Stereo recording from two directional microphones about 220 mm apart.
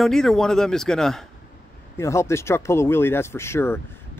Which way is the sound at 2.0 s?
10° left (ahead or behind).